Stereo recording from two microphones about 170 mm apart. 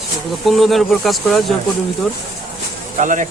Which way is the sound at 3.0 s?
50° right (ahead or behind).